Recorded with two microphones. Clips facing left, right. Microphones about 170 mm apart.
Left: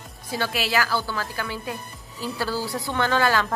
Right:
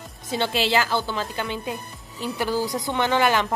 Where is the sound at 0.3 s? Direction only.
25° right (ahead or behind).